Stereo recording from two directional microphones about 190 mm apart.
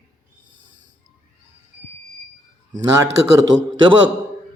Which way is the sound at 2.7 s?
15° right (ahead or behind).